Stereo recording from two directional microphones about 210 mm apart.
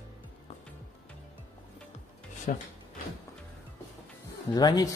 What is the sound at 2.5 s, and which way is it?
Speech, 35° left (ahead or behind).